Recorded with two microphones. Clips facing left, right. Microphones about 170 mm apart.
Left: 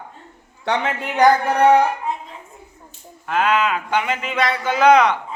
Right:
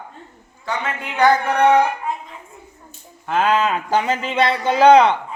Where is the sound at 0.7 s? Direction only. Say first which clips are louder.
Left 4 dB; 70° left (ahead or behind).